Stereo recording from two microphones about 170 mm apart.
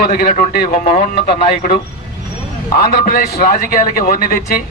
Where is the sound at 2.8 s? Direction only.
60° left (ahead or behind).